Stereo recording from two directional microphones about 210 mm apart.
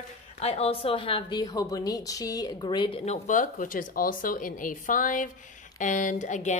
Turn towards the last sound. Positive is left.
turn(degrees=35)  # may be behind; listen again after turning